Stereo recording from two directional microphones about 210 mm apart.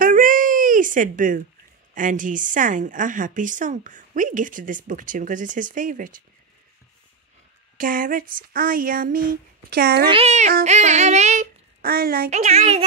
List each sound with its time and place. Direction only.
0.0 s a sound: 40° right (ahead or behind)
2.0 s speech: 40° right (ahead or behind)
7.7 s speech: 40° right (ahead or behind)
10.0 s speech: 30° right (ahead or behind)